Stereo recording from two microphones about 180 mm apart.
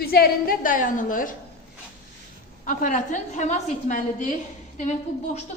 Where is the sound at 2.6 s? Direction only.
45° left (ahead or behind).